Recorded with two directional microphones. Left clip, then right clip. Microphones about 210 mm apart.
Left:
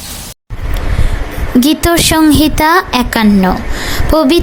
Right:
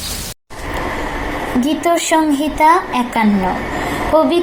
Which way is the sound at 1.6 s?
45° left (ahead or behind).